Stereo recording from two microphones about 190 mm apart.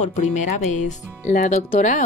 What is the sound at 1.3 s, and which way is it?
Speech, 40° left (ahead or behind).